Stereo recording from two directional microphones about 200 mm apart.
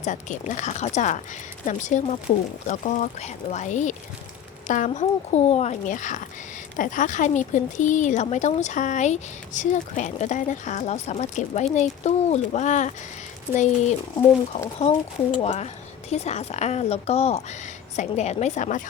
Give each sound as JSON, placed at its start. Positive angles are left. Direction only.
{"t": 0.0, "sound": "speech", "side_deg": 40}
{"t": 14.5, "sound": "speech", "side_deg": 20}